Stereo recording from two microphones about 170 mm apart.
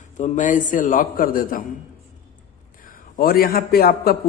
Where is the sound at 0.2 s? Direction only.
50° left (ahead or behind).